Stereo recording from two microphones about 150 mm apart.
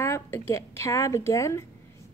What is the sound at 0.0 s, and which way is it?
A woman's voice, 20° left (ahead or behind).